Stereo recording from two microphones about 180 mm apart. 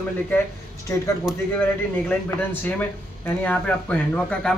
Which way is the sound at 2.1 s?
10° left (ahead or behind).